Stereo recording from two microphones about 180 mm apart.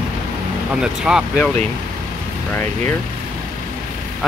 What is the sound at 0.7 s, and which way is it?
Speech, 5° right (ahead or behind).